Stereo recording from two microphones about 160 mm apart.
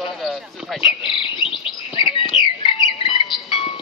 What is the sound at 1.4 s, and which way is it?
Chirp, centre (ahead or behind).